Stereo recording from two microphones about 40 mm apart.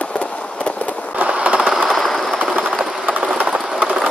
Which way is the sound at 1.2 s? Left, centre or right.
Right.